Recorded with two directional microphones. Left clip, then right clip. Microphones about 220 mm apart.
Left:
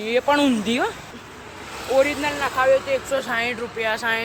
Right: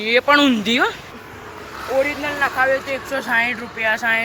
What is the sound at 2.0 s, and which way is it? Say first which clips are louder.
Speech: right 1 dB; 15° left (ahead or behind).